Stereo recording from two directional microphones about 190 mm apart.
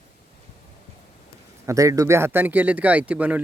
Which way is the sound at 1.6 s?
15° right (ahead or behind).